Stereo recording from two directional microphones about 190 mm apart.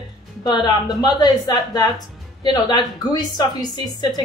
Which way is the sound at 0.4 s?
20° left (ahead or behind).